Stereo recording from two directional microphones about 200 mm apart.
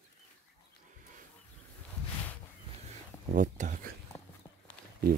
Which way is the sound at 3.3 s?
40° right (ahead or behind).